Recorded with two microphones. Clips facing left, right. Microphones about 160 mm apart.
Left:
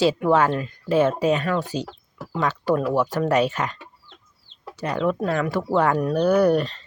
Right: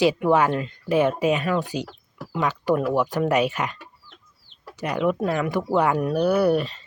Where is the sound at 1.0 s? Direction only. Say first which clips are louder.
Left 1 dB; 40° left (ahead or behind).